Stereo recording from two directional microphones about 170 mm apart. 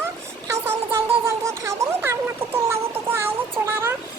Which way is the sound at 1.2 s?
15° right (ahead or behind).